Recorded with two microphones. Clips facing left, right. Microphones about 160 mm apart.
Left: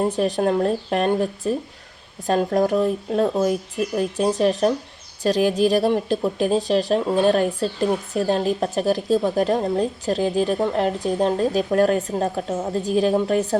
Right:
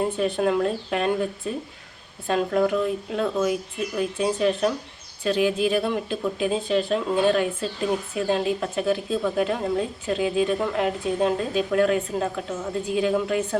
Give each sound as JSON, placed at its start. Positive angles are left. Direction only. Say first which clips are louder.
{"t": 0.3, "sound": "a woman's voice", "louder": "left 3 dB", "side_deg": 35}